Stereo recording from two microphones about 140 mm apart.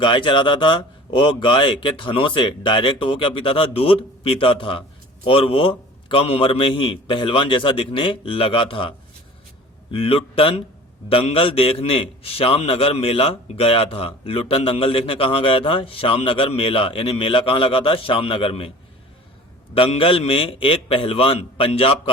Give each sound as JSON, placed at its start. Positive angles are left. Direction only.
{"t": 0.0, "sound": "a man's voice", "side_deg": 35}
{"t": 19.7, "sound": "a man's voice", "side_deg": 40}